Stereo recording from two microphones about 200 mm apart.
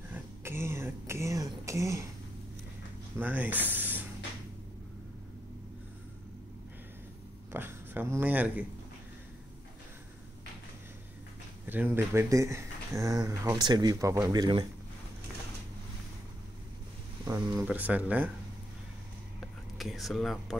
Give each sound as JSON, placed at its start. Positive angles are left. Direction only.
{"t": 0.1, "sound": "a sound", "side_deg": -10}
{"t": 3.2, "sound": "speech", "side_deg": -10}
{"t": 7.5, "sound": "a sound", "side_deg": -10}
{"t": 11.6, "sound": "speech", "side_deg": -10}
{"t": 17.6, "sound": "speech", "side_deg": -5}
{"t": 19.8, "sound": "speech", "side_deg": 0}